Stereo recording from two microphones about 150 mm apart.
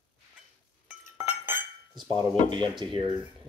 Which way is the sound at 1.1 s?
15° right (ahead or behind).